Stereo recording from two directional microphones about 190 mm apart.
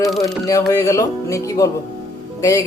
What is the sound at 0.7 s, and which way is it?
Speech, 15° left (ahead or behind).